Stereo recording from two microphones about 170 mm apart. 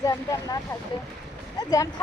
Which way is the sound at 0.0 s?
20° left (ahead or behind).